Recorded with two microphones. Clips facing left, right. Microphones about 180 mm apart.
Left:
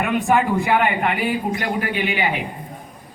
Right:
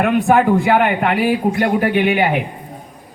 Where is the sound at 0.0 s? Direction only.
60° right (ahead or behind).